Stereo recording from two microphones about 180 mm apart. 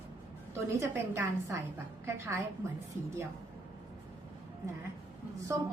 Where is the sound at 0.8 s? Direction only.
15° right (ahead or behind).